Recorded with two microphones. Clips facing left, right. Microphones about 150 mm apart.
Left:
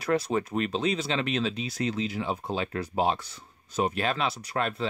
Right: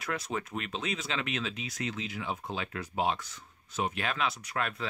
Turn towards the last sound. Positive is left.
turn(degrees=30)  # may be behind; listen again after turning